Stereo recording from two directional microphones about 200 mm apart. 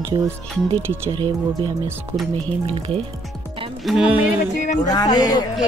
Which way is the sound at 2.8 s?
30° right (ahead or behind).